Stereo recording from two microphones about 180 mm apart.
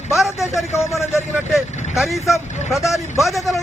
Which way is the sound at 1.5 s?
Centre (ahead or behind).